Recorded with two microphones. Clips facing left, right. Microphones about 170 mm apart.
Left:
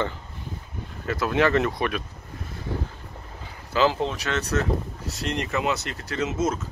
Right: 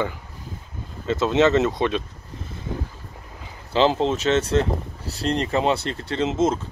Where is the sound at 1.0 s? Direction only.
25° right (ahead or behind).